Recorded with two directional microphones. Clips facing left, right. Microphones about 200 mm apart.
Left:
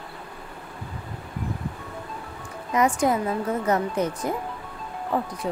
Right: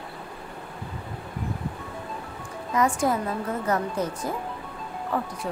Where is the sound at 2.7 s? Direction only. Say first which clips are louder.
Left 2 dB; 20° left (ahead or behind).